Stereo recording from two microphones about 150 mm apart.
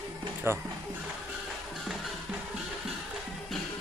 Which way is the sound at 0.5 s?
15° right (ahead or behind).